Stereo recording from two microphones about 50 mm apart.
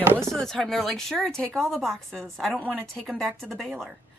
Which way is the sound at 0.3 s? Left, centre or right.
Centre.